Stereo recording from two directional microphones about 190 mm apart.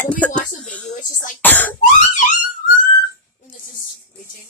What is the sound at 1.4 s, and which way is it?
Speech, 10° left (ahead or behind).